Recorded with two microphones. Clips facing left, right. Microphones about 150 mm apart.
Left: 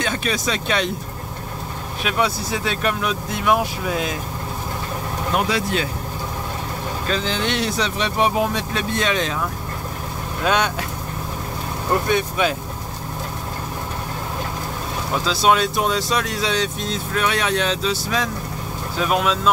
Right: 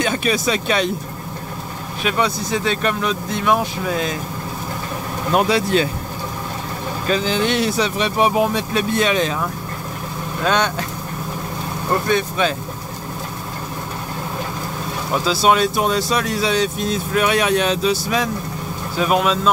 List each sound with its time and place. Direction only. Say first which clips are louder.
0.0 s speech: right 4 dB; 10° right (ahead or behind)
2.0 s speech: right 2 dB; 5° left (ahead or behind)
5.5 s speech: right 5 dB; 30° right (ahead or behind)
7.1 s speech: right 5 dB; 10° right (ahead or behind)
10.4 s speech: right 1 dB; 5° left (ahead or behind)
12.1 s speech: right 3 dB; 10° left (ahead or behind)
15.2 s speech: right 2 dB; 5° right (ahead or behind)